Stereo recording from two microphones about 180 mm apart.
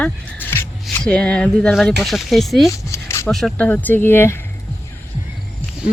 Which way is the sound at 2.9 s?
15° left (ahead or behind).